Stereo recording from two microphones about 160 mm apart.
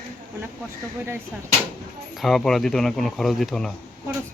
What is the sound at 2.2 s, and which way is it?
Speech, centre (ahead or behind).